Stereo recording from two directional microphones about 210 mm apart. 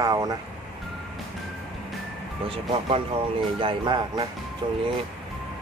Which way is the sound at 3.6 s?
20° right (ahead or behind).